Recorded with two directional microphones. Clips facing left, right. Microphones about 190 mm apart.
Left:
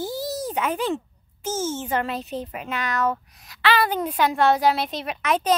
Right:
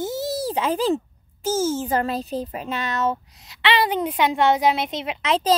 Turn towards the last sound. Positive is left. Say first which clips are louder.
# right 1 dB
turn(degrees=-25)  # may be behind; listen again after turning